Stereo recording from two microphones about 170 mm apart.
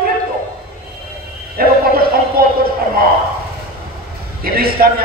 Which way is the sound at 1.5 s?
60° right (ahead or behind).